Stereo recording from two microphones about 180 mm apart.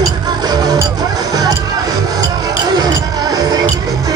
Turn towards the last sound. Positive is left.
turn(degrees=-20)  # may be behind; listen again after turning